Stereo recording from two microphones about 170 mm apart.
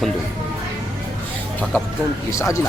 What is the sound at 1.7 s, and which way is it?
Speech, 10° left (ahead or behind).